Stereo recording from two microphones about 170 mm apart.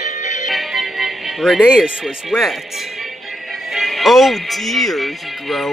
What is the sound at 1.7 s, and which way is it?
Speech, centre (ahead or behind).